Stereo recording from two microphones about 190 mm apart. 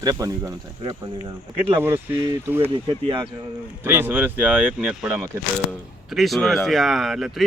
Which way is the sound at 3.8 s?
10° right (ahead or behind).